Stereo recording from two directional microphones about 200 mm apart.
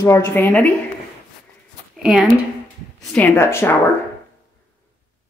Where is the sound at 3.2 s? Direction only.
15° left (ahead or behind).